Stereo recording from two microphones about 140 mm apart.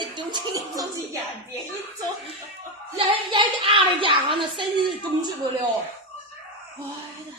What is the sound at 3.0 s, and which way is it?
Speech, 40° right (ahead or behind).